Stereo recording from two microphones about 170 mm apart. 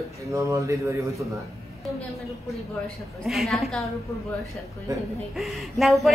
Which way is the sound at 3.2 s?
Centre (ahead or behind).